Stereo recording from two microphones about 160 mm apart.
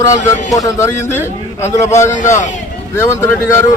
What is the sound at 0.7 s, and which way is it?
A man's voice, 15° left (ahead or behind).